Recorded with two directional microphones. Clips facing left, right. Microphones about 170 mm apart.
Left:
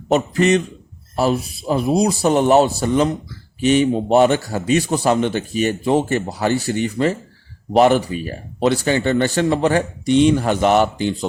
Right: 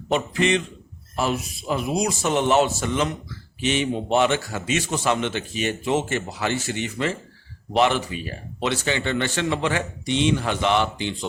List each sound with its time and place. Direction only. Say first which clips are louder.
0.1 s a man's voice: left 6 dB; 40° left (ahead or behind)